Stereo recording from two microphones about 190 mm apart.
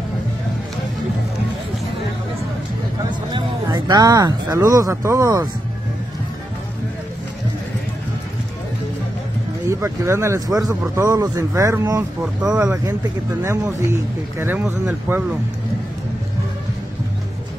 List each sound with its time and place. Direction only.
3.1 s speech: 25° right (ahead or behind)
9.7 s a man's voice: 15° right (ahead or behind)
12.2 s speech: 5° right (ahead or behind)
13.4 s a man's voice: 15° right (ahead or behind)